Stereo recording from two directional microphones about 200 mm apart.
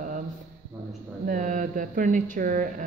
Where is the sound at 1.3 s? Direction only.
40° right (ahead or behind).